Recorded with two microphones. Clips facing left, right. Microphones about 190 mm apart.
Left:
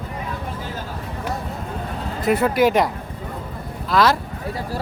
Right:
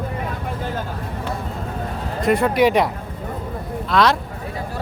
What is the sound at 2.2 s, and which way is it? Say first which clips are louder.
Speech: right 1 dB; centre (ahead or behind).